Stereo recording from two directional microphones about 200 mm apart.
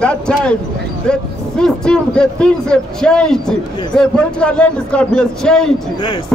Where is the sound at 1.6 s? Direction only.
5° left (ahead or behind).